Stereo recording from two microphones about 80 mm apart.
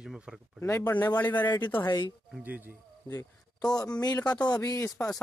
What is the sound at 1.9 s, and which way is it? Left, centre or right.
Speech, left.